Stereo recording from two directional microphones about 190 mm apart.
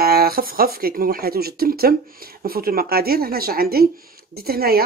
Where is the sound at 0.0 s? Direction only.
55° right (ahead or behind).